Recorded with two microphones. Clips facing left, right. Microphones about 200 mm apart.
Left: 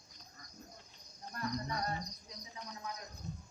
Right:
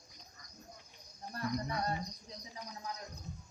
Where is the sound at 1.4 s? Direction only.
30° right (ahead or behind).